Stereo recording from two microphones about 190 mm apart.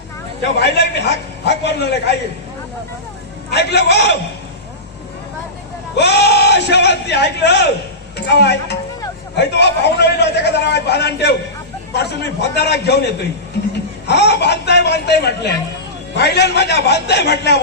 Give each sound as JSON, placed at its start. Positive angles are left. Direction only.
{"t": 0.6, "sound": "a man's voice", "side_deg": 60}
{"t": 3.5, "sound": "a man's voice", "side_deg": 60}
{"t": 6.0, "sound": "a man's voice", "side_deg": 60}